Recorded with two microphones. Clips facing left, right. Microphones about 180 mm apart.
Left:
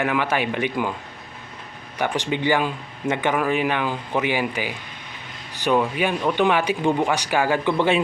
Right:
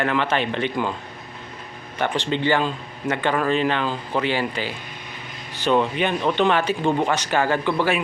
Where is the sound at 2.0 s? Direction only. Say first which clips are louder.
Even; 10° left (ahead or behind).